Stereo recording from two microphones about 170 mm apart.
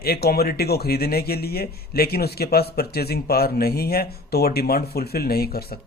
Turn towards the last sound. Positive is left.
turn(degrees=65)  # may be behind; listen again after turning